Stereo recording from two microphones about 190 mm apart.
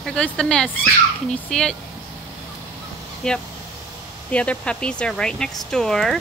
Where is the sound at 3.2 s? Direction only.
5° left (ahead or behind).